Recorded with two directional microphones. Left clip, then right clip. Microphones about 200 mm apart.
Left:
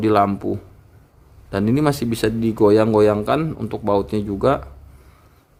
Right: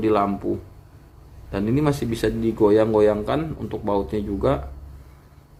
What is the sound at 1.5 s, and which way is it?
Speech, 45° left (ahead or behind).